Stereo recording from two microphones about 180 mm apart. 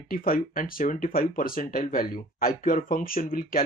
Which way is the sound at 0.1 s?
50° left (ahead or behind).